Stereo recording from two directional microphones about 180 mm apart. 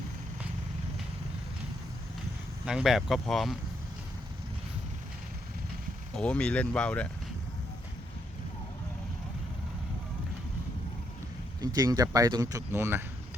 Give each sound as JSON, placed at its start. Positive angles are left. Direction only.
{"t": 2.6, "sound": "speech", "side_deg": -5}
{"t": 6.1, "sound": "speech", "side_deg": 5}
{"t": 11.6, "sound": "speech", "side_deg": -20}